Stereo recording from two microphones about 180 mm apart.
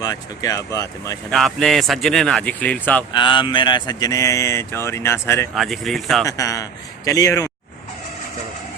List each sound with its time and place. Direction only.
0.0 s a man's voice: 20° left (ahead or behind)
1.3 s speech: centre (ahead or behind)
3.1 s speech: 25° left (ahead or behind)
5.5 s speech: centre (ahead or behind)
6.2 s a man's voice: 20° left (ahead or behind)